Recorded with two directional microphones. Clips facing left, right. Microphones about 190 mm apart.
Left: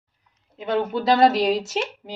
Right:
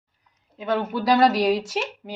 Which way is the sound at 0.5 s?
25° left (ahead or behind).